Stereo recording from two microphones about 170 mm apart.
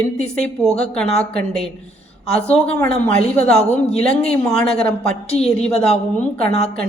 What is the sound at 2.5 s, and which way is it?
Speech, 5° left (ahead or behind).